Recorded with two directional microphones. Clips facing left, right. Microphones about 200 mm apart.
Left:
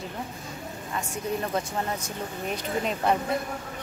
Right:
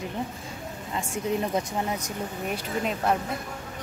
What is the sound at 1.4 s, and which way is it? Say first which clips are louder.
Speech: right 2 dB; 15° right (ahead or behind).